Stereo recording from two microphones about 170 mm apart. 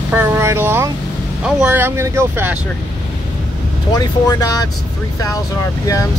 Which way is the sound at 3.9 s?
25° left (ahead or behind).